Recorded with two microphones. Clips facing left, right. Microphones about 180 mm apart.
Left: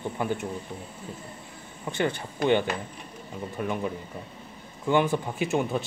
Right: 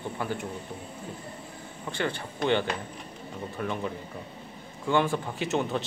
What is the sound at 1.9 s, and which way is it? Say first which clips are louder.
Speech: left 3 dB; 20° left (ahead or behind).